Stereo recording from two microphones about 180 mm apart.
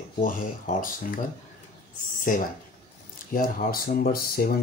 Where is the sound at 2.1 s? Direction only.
45° left (ahead or behind).